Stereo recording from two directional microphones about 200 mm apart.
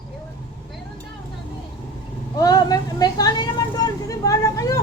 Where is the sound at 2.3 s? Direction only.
20° left (ahead or behind).